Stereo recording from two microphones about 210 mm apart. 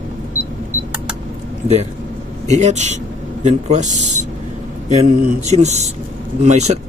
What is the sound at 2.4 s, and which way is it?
Speech, 35° right (ahead or behind).